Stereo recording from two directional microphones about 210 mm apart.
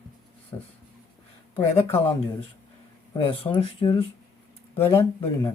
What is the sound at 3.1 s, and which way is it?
Speech, 25° left (ahead or behind).